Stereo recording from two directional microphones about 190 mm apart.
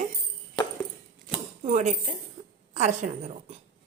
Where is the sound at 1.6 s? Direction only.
35° right (ahead or behind).